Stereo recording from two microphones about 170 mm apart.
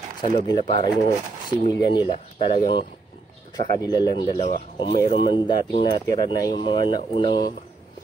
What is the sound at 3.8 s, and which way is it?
Speech, 25° left (ahead or behind).